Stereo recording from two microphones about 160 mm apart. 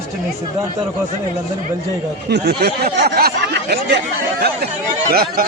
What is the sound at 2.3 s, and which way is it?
Speech, 90° right.